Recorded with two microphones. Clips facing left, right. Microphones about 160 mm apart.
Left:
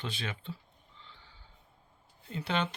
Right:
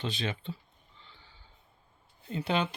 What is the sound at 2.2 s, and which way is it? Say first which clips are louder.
Speech: right 3 dB; 20° right (ahead or behind).